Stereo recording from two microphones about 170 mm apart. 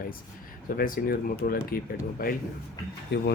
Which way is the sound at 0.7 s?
55° left (ahead or behind).